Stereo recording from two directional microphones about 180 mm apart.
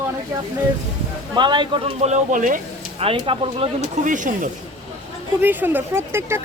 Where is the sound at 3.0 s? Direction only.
30° right (ahead or behind).